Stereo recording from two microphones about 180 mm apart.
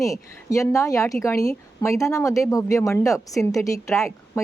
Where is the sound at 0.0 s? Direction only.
20° left (ahead or behind).